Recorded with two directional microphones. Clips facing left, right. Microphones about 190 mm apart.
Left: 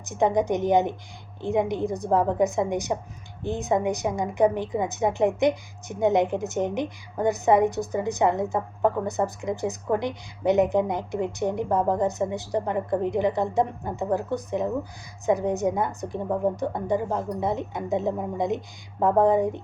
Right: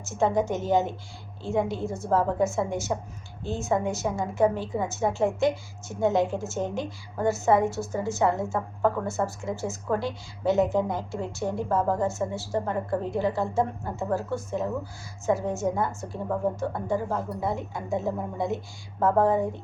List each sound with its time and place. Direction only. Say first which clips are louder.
0.0 s a woman's voice: left 2 dB; 15° left (ahead or behind)